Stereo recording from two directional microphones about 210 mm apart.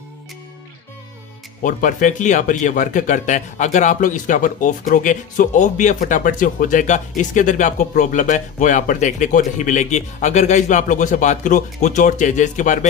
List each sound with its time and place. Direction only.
1.6 s speech: 40° left (ahead or behind)